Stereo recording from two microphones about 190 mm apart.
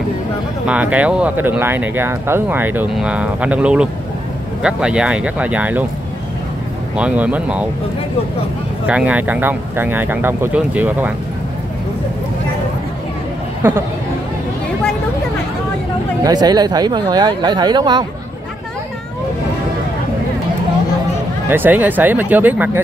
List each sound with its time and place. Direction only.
0.7 s speech: 5° right (ahead or behind)
7.0 s speech: 5° right (ahead or behind)
8.8 s speech: 5° right (ahead or behind)
13.6 s speech: 10° right (ahead or behind)
16.3 s speech: 20° right (ahead or behind)
21.5 s speech: 10° right (ahead or behind)